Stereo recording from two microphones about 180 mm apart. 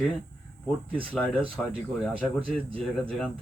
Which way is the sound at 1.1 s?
5° left (ahead or behind).